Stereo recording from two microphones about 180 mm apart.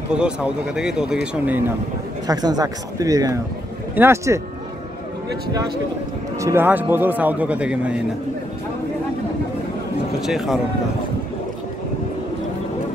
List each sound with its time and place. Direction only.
0.1 s speech: 5° right (ahead or behind)
2.2 s a man's voice: 20° right (ahead or behind)
6.4 s a man's voice: 10° right (ahead or behind)
10.2 s speech: centre (ahead or behind)